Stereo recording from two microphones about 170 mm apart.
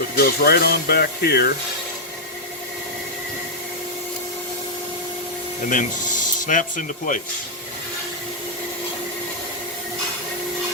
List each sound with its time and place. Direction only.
0.2 s speech: 65° left (ahead or behind)
5.6 s speech: 50° left (ahead or behind)